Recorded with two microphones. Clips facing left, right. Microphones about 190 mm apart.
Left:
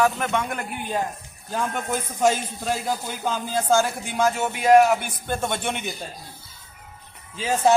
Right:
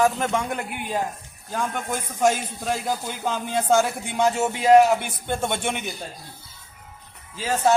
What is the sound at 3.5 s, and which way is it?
Speech, 20° right (ahead or behind).